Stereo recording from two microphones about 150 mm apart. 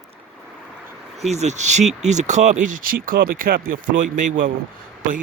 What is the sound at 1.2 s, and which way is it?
Speech, 45° right (ahead or behind).